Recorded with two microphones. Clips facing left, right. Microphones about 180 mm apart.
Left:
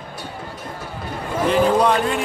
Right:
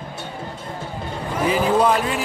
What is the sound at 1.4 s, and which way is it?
Speech, 5° right (ahead or behind).